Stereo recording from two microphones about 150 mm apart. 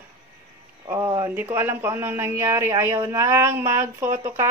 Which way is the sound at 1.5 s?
15° right (ahead or behind).